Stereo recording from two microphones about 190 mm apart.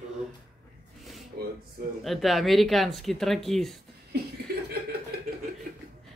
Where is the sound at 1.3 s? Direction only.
50° right (ahead or behind).